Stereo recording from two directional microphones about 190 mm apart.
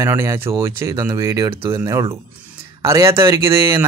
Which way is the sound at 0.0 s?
15° right (ahead or behind).